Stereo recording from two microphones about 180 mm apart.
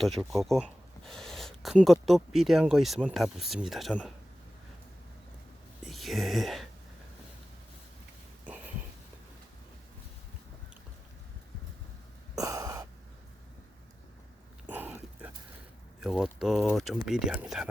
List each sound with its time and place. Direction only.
0.0 s speech: centre (ahead or behind)
5.8 s speech: centre (ahead or behind)
8.4 s a sound: 10° right (ahead or behind)
12.4 s gasp: 20° right (ahead or behind)
14.7 s dog: 10° right (ahead or behind)
16.0 s speech: 5° right (ahead or behind)